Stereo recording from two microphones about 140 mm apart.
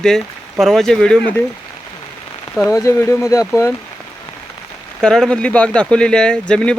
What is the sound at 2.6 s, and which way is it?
Speech, 20° left (ahead or behind).